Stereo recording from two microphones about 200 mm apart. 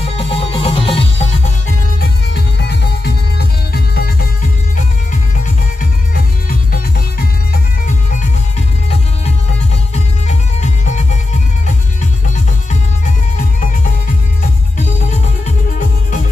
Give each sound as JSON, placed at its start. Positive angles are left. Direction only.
{"t": 0.0, "sound": "music", "side_deg": 30}
{"t": 2.6, "sound": "music", "side_deg": 55}
{"t": 9.9, "sound": "music", "side_deg": 35}